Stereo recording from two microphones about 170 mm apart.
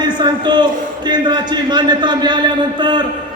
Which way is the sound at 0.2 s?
25° right (ahead or behind).